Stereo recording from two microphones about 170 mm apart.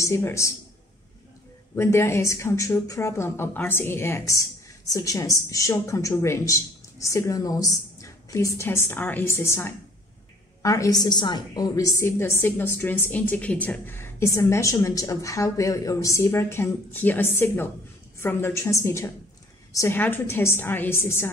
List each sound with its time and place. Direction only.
0.0 s a woman's voice: 15° left (ahead or behind)
1.8 s a woman's voice: 15° left (ahead or behind)